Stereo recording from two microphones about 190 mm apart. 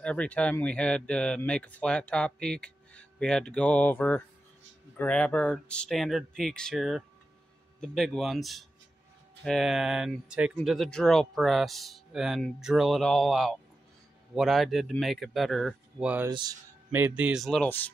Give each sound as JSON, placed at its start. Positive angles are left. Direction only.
{"t": 0.0, "sound": "speech", "side_deg": 5}
{"t": 16.3, "sound": "speech", "side_deg": -20}
{"t": 16.9, "sound": "speech", "side_deg": -10}